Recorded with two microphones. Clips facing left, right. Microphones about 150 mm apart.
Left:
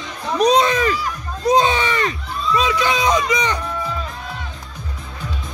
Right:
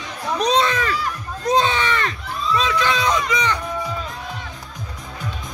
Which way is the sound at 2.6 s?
10° left (ahead or behind).